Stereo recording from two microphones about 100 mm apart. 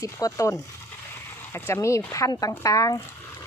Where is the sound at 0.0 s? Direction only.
35° left (ahead or behind).